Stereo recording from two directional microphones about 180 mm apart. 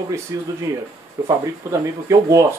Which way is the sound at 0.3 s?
15° right (ahead or behind).